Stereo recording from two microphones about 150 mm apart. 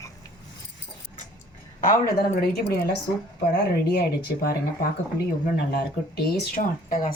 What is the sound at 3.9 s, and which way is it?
Speech, 90° left.